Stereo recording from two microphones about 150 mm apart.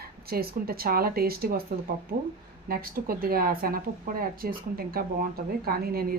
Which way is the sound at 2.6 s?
80° right.